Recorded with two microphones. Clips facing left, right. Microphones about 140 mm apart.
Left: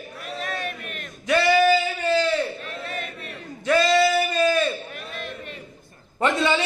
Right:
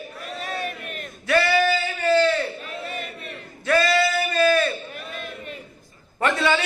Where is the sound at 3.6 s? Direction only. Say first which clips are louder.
Left 1 dB; 15° left (ahead or behind).